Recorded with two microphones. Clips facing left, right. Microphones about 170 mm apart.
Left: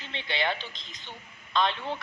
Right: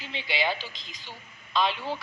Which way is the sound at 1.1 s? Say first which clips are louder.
Even; 5° right (ahead or behind).